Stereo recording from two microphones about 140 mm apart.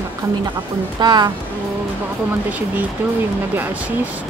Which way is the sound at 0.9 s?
30° right (ahead or behind).